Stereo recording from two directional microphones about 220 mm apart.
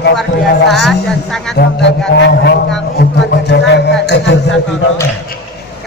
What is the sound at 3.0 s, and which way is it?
Music, 50° left (ahead or behind).